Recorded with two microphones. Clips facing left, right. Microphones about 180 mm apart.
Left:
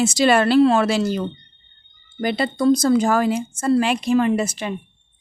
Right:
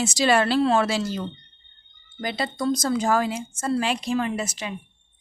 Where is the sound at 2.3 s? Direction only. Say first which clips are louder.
Left 8 dB; 60° left (ahead or behind).